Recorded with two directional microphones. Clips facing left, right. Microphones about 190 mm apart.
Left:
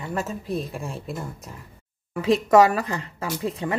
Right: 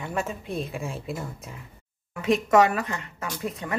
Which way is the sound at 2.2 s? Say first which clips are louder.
Left 3 dB; 35° left (ahead or behind).